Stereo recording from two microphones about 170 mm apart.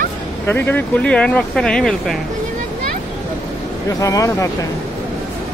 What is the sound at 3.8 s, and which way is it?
Speech, 20° left (ahead or behind).